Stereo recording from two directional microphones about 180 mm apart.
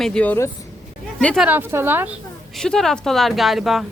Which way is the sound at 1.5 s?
15° right (ahead or behind).